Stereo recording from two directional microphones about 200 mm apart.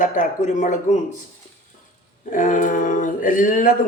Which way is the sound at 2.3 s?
40° left (ahead or behind).